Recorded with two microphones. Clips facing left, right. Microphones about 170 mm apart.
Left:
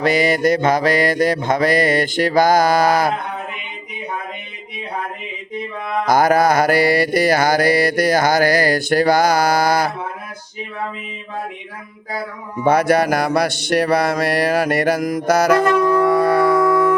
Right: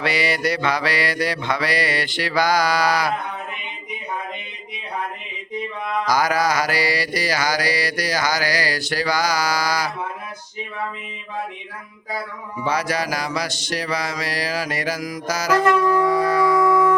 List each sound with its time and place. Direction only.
0.0 s mantra: 45° left (ahead or behind)
6.1 s mantra: 55° left (ahead or behind)
12.6 s mantra: 55° left (ahead or behind)
16.0 s music: 60° left (ahead or behind)